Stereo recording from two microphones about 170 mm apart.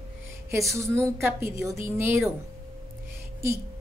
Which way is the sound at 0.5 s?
15° right (ahead or behind).